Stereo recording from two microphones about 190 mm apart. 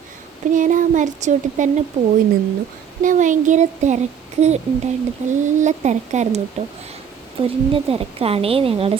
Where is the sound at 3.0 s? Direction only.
40° right (ahead or behind).